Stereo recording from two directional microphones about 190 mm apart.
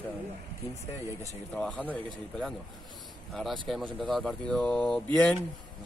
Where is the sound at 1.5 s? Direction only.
5° left (ahead or behind).